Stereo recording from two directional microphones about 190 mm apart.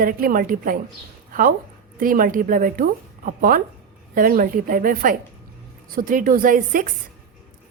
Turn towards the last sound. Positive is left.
turn(degrees=-45)  # may be behind; listen again after turning